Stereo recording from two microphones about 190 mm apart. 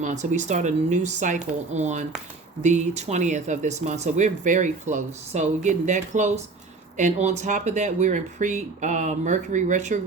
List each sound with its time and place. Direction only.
0.0 s speech: 40° right (ahead or behind)